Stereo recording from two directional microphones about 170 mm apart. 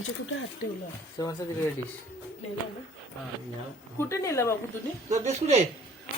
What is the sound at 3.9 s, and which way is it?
Speech, 15° left (ahead or behind).